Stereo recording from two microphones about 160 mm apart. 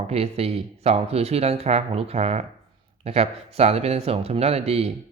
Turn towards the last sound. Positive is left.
turn(degrees=-40)  # may be behind; listen again after turning